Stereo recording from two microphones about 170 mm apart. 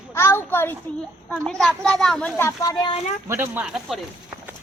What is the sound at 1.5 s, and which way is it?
Speech, 5° left (ahead or behind).